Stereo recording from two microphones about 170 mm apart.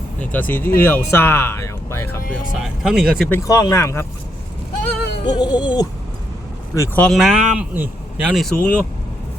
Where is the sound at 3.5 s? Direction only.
20° left (ahead or behind).